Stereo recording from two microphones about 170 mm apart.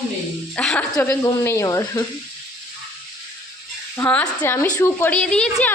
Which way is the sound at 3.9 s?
10° left (ahead or behind).